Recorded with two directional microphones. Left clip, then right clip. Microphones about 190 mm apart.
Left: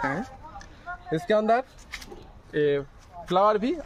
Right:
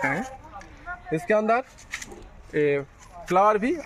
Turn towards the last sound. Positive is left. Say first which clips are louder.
# right 2 dB
turn(degrees=-20)  # may be behind; listen again after turning